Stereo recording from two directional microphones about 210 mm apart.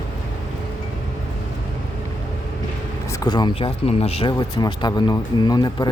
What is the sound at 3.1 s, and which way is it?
Speech, 20° left (ahead or behind).